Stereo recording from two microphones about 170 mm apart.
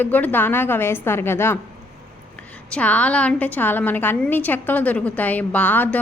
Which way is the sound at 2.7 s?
10° left (ahead or behind).